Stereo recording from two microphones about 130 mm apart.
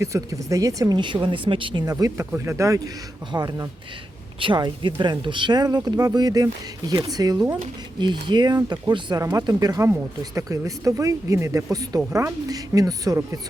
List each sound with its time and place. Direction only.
0.0 s speech: 25° right (ahead or behind)
1.8 s speech: 25° right (ahead or behind)